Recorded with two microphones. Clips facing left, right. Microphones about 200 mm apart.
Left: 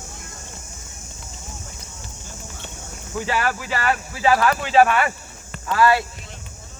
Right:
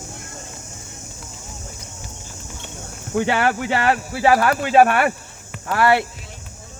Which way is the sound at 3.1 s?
65° right (ahead or behind).